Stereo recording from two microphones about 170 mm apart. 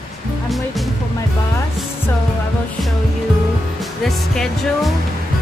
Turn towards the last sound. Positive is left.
turn(degrees=0)  # may be behind; listen again after turning